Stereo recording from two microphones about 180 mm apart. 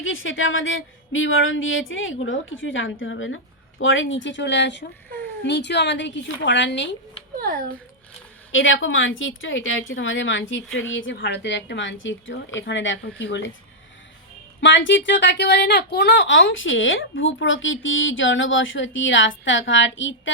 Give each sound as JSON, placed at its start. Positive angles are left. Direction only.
{"t": 0.0, "sound": "a woman's voice", "side_deg": 90}
{"t": 7.3, "sound": "a child's voice", "side_deg": -50}
{"t": 8.5, "sound": "speech", "side_deg": 90}
{"t": 14.6, "sound": "speech", "side_deg": 90}